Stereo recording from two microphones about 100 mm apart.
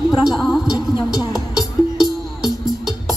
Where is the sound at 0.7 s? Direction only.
40° left (ahead or behind).